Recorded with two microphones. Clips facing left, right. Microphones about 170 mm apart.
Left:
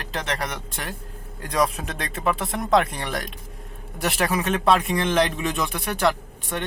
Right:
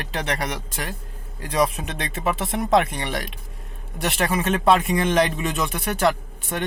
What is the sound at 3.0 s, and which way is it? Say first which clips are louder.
Speech: right 1 dB; 5° right (ahead or behind).